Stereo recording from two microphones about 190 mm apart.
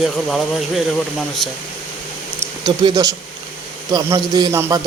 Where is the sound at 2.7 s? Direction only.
20° right (ahead or behind).